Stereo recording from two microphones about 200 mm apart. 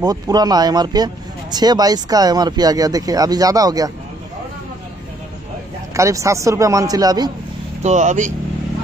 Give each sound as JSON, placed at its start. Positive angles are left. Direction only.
{"t": 0.0, "sound": "speech", "side_deg": -20}
{"t": 5.9, "sound": "a man's voice", "side_deg": -15}
{"t": 7.8, "sound": "speech", "side_deg": -35}